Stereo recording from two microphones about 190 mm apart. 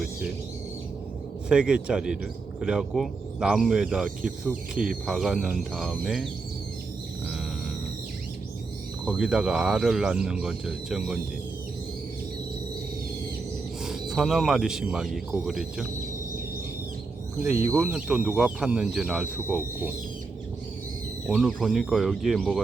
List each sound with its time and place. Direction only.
1.5 s speech: 5° right (ahead or behind)
9.0 s speech: 5° right (ahead or behind)
13.8 s speech: centre (ahead or behind)
17.4 s speech: 10° right (ahead or behind)
21.2 s speech: centre (ahead or behind)